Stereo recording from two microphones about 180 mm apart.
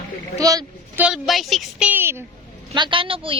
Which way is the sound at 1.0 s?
Centre (ahead or behind).